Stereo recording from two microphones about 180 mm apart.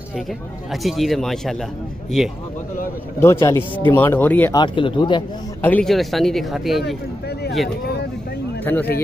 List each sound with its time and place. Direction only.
0.7 s speech: centre (ahead or behind)
3.2 s speech: 15° left (ahead or behind)
4.6 s speech: 25° left (ahead or behind)
5.6 s speech: 10° left (ahead or behind)
8.7 s speech: 10° left (ahead or behind)